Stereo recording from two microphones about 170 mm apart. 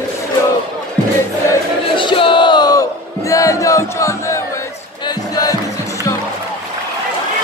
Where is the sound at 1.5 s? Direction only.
30° left (ahead or behind).